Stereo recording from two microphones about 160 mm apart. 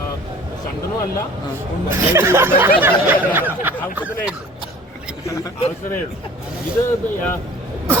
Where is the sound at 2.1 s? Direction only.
15° right (ahead or behind).